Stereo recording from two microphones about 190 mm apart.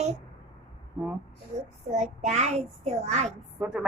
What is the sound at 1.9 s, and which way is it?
Child singing, 35° right (ahead or behind).